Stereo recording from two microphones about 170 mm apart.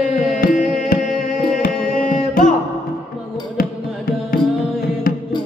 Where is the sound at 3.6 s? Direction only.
60° left (ahead or behind).